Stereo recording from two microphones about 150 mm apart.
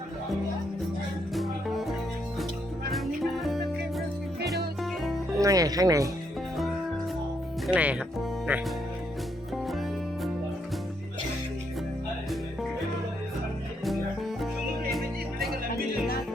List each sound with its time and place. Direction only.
1.3 s music: centre (ahead or behind)
5.4 s speech: 25° right (ahead or behind)
7.7 s speech: 10° right (ahead or behind)
13.8 s music: centre (ahead or behind)